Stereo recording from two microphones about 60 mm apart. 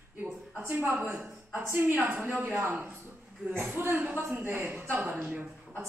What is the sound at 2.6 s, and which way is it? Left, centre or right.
Speech, right.